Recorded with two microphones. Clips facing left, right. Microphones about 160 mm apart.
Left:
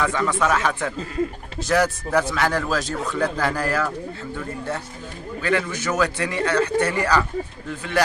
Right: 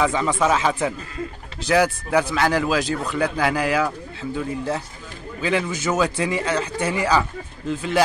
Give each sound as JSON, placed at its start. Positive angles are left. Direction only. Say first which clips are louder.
{"t": 0.0, "sound": "speech", "louder": "right 2 dB", "side_deg": -15}
{"t": 1.7, "sound": "speech", "louder": "right 2 dB", "side_deg": -10}
{"t": 7.6, "sound": "speech", "louder": "right 5 dB", "side_deg": -25}